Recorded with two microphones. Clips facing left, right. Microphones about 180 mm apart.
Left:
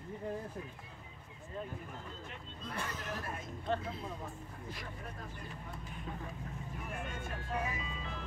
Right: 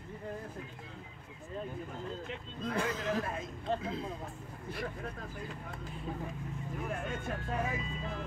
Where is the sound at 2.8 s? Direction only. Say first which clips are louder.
Right 8 dB; 90° right.